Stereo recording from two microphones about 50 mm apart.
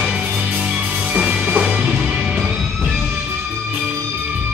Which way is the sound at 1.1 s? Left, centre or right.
Right.